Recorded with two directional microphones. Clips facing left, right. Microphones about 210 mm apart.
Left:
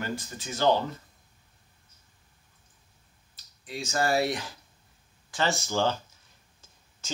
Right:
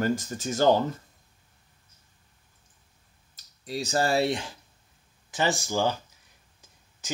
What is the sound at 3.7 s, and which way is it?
Speech, 35° right (ahead or behind).